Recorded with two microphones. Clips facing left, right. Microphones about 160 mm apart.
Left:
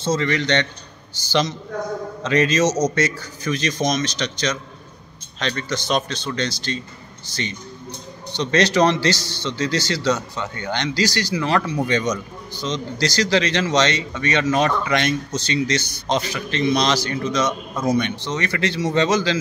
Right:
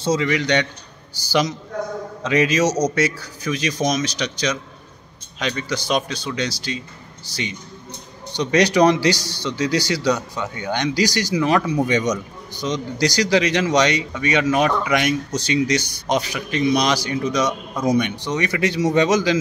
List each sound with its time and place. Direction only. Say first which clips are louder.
0.0 s speech: right 1 dB; 10° right (ahead or behind)
2.2 s speech: even; 10° right (ahead or behind)
8.3 s speech: right 1 dB; 15° right (ahead or behind)